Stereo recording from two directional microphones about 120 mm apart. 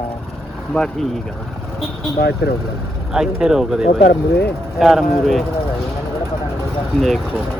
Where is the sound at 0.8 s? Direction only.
10° left (ahead or behind).